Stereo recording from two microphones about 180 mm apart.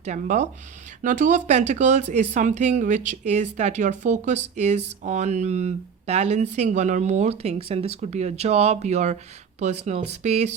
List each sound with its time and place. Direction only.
0.0 s speech: 40° right (ahead or behind)